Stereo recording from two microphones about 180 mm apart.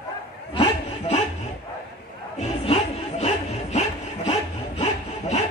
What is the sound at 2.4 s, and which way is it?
Bow-wow, 35° left (ahead or behind).